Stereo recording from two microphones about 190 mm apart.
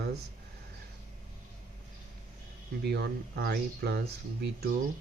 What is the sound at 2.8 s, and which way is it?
Speech, 55° right (ahead or behind).